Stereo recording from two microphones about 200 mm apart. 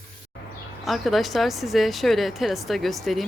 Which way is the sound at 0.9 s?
Centre (ahead or behind).